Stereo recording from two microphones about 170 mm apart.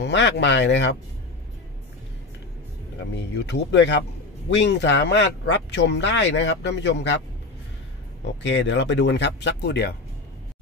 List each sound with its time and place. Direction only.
0.0 s speech: 90° left
3.0 s speech: 90° left
8.2 s speech: 90° left; by 9.9 s 70° left (ahead or behind)